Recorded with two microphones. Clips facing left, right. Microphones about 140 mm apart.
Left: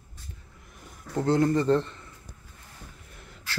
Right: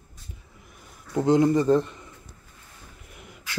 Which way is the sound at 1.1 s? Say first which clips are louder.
Right 3 dB; 15° right (ahead or behind).